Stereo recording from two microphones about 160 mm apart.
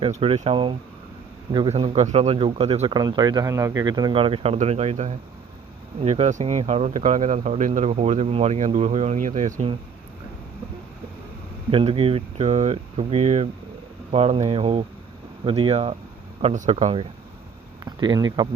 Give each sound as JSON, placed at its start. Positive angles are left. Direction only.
{"t": 0.0, "sound": "speech", "side_deg": -35}
{"t": 11.7, "sound": "speech", "side_deg": -35}
{"t": 17.8, "sound": "speech", "side_deg": -25}